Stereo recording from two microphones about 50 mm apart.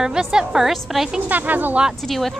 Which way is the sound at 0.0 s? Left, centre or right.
Centre.